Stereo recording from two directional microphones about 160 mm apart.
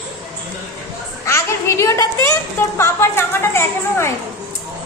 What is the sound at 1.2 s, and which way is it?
A child's voice, 20° left (ahead or behind).